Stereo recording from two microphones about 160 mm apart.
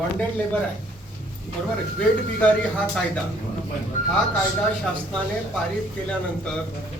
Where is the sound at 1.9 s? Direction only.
5° left (ahead or behind).